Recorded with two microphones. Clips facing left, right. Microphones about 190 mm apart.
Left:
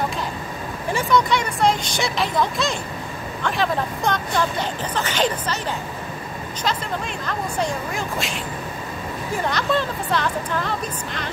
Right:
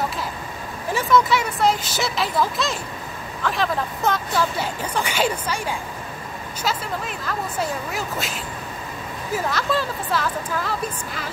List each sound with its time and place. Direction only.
0.9 s speech: centre (ahead or behind)
7.2 s speech: 5° right (ahead or behind)